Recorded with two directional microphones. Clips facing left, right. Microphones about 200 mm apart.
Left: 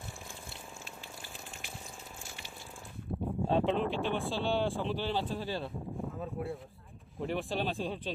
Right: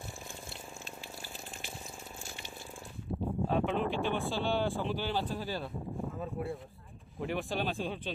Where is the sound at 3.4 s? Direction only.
30° left (ahead or behind).